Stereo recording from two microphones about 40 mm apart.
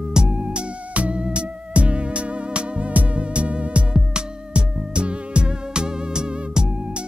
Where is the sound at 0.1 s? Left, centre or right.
Centre.